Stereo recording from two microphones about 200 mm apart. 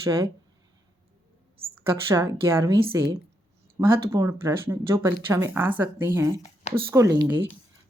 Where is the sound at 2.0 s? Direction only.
15° right (ahead or behind).